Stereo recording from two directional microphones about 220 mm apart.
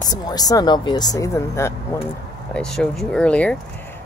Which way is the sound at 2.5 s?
Centre (ahead or behind).